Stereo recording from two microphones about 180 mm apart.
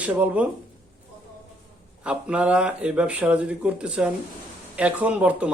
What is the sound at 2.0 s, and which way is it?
A man's voice, 5° right (ahead or behind).